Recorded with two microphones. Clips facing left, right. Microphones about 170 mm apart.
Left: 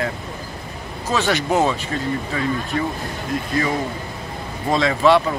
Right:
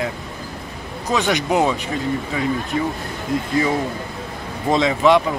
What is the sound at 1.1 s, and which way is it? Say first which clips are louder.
Speech: right 1 dB; 15° right (ahead or behind).